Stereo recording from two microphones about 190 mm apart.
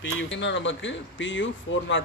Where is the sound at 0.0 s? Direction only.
75° left (ahead or behind).